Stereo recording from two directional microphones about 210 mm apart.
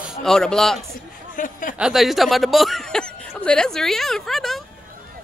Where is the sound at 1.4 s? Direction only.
40° left (ahead or behind).